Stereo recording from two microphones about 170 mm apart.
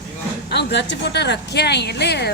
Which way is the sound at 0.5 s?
80° left.